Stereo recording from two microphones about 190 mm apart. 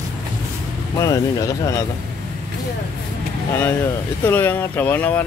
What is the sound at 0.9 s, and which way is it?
Speech, 15° left (ahead or behind).